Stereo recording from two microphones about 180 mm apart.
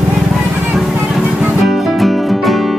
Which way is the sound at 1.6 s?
Centre (ahead or behind).